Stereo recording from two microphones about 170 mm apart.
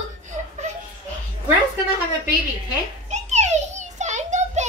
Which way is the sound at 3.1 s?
40° right (ahead or behind).